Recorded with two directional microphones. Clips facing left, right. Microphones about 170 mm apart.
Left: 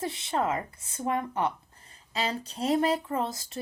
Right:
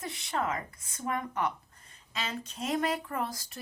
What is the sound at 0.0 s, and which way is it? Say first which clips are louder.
Speech: left 4 dB; 30° left (ahead or behind).